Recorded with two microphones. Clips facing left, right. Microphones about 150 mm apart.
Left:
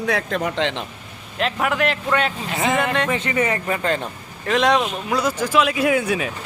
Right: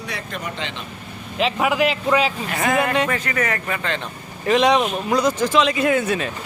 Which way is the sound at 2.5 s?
20° left (ahead or behind).